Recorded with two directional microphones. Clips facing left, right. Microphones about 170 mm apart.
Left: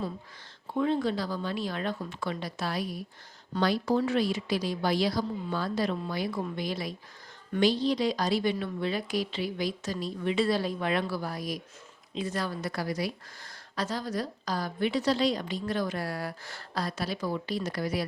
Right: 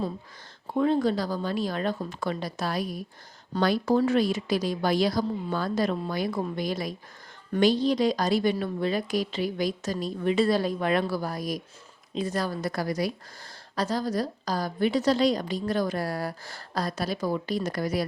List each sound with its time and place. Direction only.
0.7 s a woman's voice: 40° right (ahead or behind)